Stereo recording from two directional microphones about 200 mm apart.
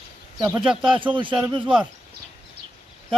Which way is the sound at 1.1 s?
25° right (ahead or behind).